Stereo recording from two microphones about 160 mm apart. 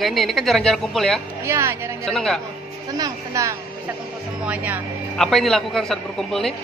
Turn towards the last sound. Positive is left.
turn(degrees=0)  # may be behind; listen again after turning